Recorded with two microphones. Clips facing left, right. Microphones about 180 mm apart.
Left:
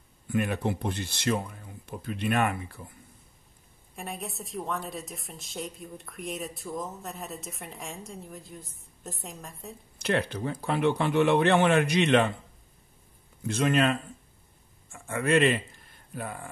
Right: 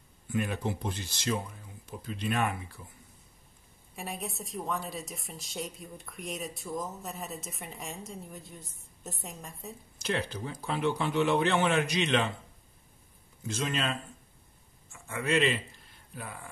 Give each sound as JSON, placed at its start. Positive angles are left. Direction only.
{"t": 0.3, "sound": "speech", "side_deg": 60}
{"t": 3.9, "sound": "a woman's voice", "side_deg": 0}
{"t": 9.9, "sound": "speech", "side_deg": 60}
{"t": 13.5, "sound": "a man's voice", "side_deg": 60}